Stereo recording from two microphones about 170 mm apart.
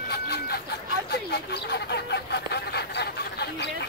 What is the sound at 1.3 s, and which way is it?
Speech, 75° left (ahead or behind).